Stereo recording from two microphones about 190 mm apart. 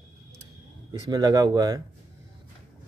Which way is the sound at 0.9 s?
20° right (ahead or behind).